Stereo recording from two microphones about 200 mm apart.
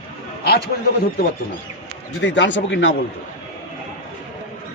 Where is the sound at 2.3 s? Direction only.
65° left (ahead or behind).